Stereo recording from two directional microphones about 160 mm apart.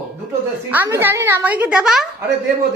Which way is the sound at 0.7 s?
15° right (ahead or behind).